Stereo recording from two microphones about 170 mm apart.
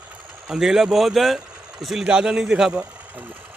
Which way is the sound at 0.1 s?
5° right (ahead or behind).